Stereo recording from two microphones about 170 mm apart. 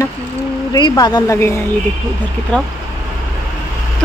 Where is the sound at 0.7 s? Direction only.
25° left (ahead or behind).